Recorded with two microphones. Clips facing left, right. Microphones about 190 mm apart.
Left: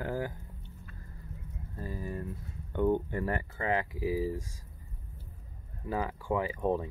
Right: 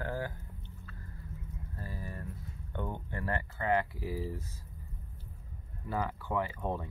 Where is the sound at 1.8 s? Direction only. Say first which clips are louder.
Left 6 dB; 20° left (ahead or behind).